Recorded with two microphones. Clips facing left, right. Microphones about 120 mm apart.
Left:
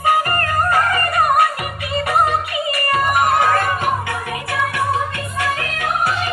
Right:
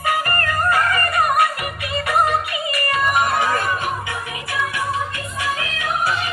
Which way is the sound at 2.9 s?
50° left (ahead or behind).